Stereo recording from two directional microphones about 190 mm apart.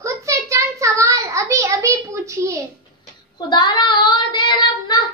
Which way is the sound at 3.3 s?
25° left (ahead or behind).